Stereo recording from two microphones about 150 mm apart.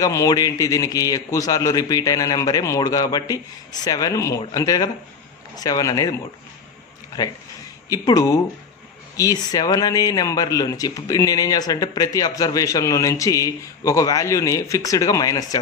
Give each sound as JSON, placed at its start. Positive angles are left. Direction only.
{"t": 0.0, "sound": "speech", "side_deg": 20}
{"t": 7.9, "sound": "speech", "side_deg": 25}